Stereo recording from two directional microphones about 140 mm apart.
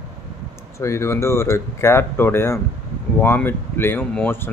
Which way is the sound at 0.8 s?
20° left (ahead or behind).